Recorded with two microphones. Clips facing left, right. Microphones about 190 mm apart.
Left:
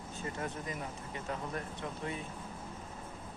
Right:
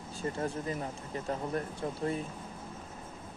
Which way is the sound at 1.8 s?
35° right (ahead or behind).